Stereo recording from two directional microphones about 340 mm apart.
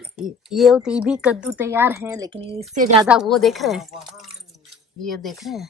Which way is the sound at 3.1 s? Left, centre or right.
Centre.